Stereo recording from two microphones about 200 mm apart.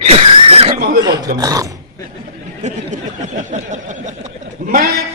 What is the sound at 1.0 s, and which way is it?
Speech, 20° right (ahead or behind).